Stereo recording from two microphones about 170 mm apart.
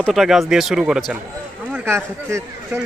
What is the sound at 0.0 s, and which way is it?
A man's voice, centre (ahead or behind).